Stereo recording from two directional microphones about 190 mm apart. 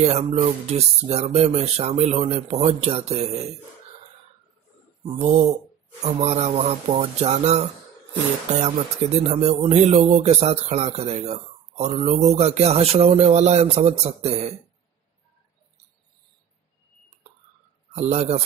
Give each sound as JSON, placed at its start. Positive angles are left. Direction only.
{"t": 0.0, "sound": "speech", "side_deg": -35}
{"t": 5.0, "sound": "speech", "side_deg": -35}
{"t": 17.9, "sound": "speech", "side_deg": -35}